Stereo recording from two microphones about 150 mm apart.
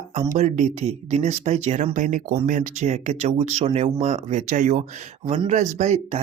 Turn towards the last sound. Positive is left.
turn(degrees=-50)  # may be behind; listen again after turning